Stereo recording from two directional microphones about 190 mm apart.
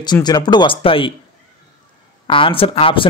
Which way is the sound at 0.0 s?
20° left (ahead or behind).